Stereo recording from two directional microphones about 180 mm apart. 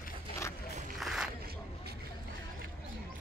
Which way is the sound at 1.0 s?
5° right (ahead or behind).